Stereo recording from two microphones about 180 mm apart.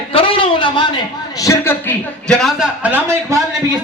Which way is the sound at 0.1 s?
30° left (ahead or behind).